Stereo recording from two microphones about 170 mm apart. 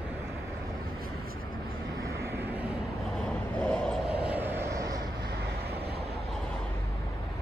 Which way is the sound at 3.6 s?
5° left (ahead or behind).